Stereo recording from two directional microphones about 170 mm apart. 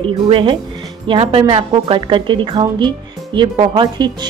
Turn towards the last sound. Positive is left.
turn(degrees=-25)  # may be behind; listen again after turning